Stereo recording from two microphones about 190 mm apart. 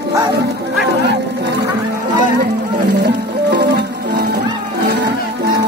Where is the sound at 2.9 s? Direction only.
65° right (ahead or behind).